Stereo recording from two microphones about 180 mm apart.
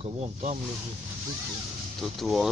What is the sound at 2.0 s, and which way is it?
Speech, centre (ahead or behind).